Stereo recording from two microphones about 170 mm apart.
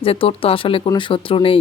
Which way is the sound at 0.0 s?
35° left (ahead or behind).